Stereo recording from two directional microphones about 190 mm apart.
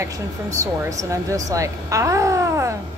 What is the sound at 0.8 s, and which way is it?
Speech, 15° right (ahead or behind).